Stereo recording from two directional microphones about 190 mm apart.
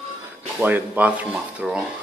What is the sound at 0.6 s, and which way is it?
Speech, 10° right (ahead or behind).